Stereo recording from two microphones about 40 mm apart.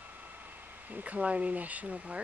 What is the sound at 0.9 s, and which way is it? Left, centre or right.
Speech, right.